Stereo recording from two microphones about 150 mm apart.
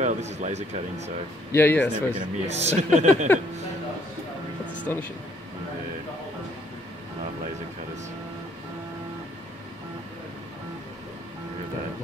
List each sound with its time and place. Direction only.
0.0 s speech: 50° right (ahead or behind)
1.5 s speech: 15° left (ahead or behind)
2.1 s speech: 45° right (ahead or behind)
3.3 s speech: 15° left (ahead or behind)
4.9 s speech: 15° left (ahead or behind)